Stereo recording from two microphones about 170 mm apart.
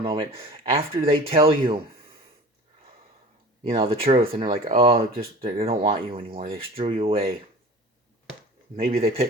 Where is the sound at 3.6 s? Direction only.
35° right (ahead or behind).